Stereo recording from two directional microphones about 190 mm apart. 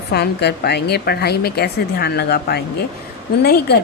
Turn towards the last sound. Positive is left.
turn(degrees=55)  # may be behind; listen again after turning